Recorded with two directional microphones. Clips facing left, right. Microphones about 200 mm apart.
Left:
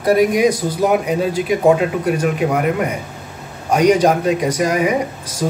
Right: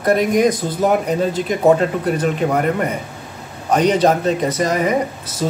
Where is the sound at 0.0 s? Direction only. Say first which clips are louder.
Left 1 dB; 10° left (ahead or behind).